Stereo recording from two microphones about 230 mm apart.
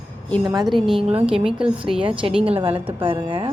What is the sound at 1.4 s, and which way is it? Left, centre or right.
Speech, centre.